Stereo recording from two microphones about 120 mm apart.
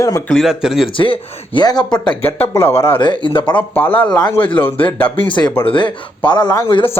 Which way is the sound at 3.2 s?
40° left (ahead or behind).